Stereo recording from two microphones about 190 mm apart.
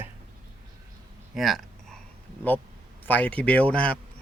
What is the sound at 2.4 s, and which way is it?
Speech, 10° left (ahead or behind).